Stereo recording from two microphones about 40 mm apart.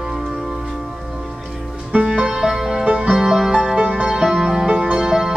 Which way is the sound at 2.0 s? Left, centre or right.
Centre.